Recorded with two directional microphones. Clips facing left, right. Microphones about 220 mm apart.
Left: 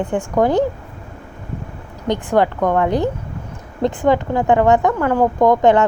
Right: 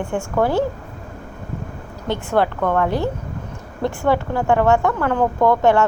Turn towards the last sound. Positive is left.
turn(degrees=15)  # may be behind; listen again after turning